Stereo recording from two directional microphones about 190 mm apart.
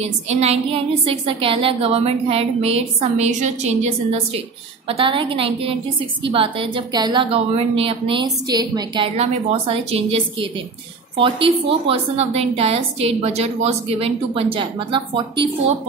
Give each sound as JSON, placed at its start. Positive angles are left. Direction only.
{"t": 0.3, "sound": "a woman's voice", "side_deg": -35}